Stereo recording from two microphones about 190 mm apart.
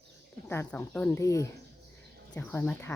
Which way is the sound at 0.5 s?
10° left (ahead or behind).